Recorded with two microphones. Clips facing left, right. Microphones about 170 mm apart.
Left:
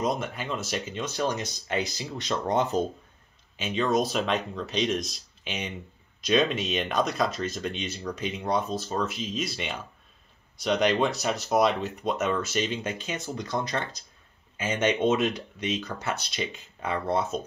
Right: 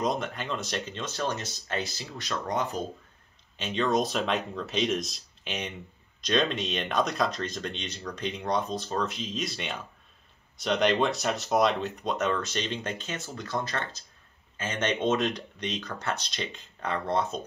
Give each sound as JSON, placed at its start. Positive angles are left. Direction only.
{"t": 0.0, "sound": "speech", "side_deg": 0}
{"t": 3.5, "sound": "speech", "side_deg": 5}